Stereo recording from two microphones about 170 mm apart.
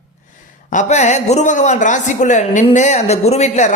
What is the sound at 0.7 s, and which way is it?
A woman's voice, 45° left (ahead or behind).